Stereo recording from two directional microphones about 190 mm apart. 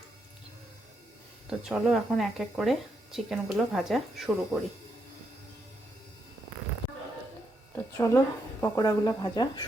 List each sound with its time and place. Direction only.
1.5 s speech: 5° right (ahead or behind)
7.8 s a sound: 15° left (ahead or behind)
8.6 s speech: 15° left (ahead or behind)